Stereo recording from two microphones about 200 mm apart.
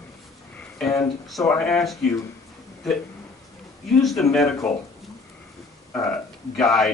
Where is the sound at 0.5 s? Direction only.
5° left (ahead or behind).